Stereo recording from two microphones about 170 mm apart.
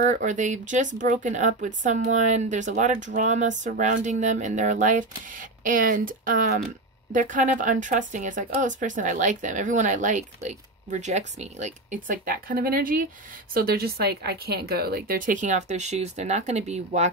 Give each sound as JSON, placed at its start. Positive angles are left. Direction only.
{"t": 0.0, "sound": "speech", "side_deg": -45}